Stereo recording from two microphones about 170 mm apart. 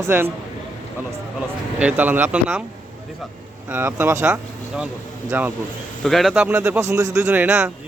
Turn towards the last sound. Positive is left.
turn(degrees=-10)  # may be behind; listen again after turning